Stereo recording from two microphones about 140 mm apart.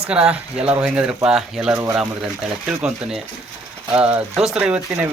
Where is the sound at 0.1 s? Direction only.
10° right (ahead or behind).